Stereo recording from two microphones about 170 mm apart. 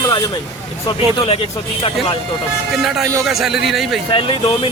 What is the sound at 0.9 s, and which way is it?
Speech, 35° left (ahead or behind).